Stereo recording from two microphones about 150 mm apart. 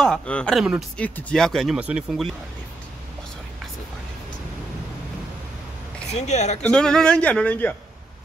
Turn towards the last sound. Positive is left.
turn(degrees=10)  # may be behind; listen again after turning